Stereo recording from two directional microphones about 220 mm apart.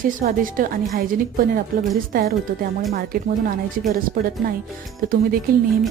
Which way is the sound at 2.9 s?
40° right (ahead or behind).